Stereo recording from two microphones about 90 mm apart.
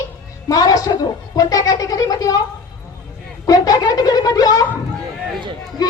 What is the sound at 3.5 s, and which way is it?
A woman's voice, 45° left (ahead or behind).